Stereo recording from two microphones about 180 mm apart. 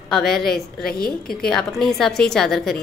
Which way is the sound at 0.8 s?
55° left (ahead or behind).